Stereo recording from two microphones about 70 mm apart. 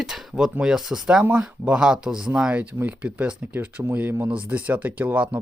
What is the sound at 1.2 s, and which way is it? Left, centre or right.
Speech, right.